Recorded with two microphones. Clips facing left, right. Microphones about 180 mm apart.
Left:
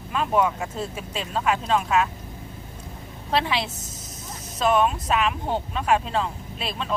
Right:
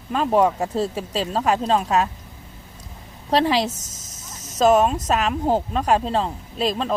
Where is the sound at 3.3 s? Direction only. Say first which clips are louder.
Right 6 dB; 35° right (ahead or behind).